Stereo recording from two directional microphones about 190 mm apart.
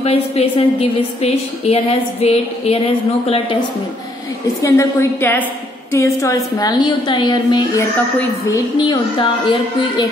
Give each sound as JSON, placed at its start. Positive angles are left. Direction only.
{"t": 0.0, "sound": "a woman's voice", "side_deg": 30}
{"t": 4.6, "sound": "a woman's voice", "side_deg": 15}